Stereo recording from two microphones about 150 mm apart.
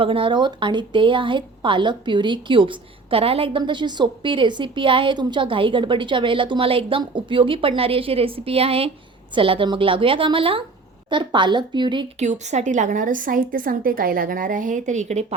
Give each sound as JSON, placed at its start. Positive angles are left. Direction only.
{"t": 0.0, "sound": "a woman's voice", "side_deg": -35}
{"t": 12.2, "sound": "a woman's voice", "side_deg": -50}